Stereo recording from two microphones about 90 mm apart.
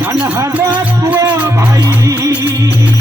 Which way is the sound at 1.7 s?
35° right (ahead or behind).